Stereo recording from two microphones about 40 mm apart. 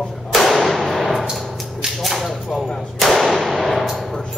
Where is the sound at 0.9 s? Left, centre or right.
Centre.